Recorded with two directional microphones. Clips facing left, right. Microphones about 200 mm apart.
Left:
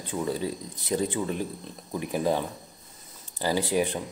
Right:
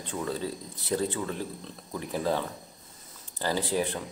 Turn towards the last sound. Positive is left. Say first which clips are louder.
# left 3 dB
turn(degrees=15)  # may be behind; listen again after turning